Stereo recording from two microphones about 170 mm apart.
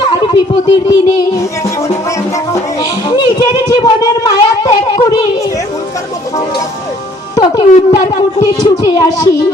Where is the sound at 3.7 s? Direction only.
25° left (ahead or behind).